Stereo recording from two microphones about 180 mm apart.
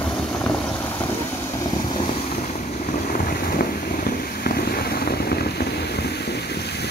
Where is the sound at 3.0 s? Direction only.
55° left (ahead or behind).